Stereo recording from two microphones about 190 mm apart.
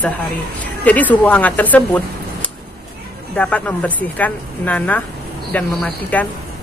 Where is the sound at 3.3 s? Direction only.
5° left (ahead or behind).